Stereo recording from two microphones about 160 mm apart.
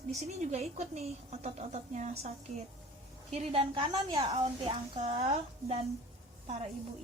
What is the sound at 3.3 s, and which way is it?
A woman's voice, 35° right (ahead or behind).